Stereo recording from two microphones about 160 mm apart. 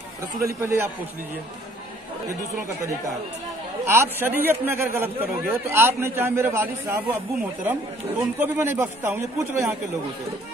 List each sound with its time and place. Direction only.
0.6 s a man's voice: 15° right (ahead or behind)
3.8 s a man's voice: 15° right (ahead or behind)